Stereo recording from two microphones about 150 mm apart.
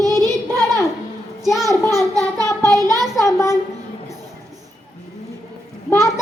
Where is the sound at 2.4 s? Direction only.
20° left (ahead or behind).